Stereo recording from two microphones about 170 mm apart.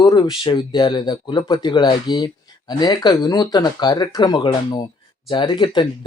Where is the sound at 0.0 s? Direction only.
25° left (ahead or behind).